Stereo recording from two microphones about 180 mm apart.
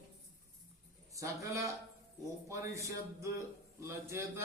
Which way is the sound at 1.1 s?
15° right (ahead or behind).